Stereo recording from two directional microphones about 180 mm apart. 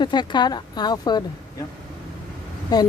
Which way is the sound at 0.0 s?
25° left (ahead or behind).